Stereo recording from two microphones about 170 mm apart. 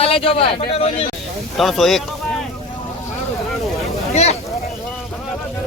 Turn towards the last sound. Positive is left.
turn(degrees=40)  # may be behind; listen again after turning